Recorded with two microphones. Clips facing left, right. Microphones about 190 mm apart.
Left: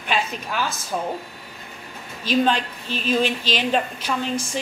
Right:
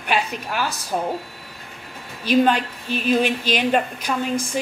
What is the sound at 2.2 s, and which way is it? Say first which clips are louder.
Speech: right 3 dB; 10° right (ahead or behind).